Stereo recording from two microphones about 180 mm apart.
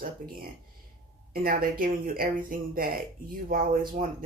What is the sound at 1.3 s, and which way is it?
Speech, 55° right (ahead or behind).